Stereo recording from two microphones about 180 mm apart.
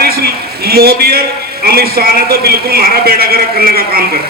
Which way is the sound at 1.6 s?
60° right (ahead or behind).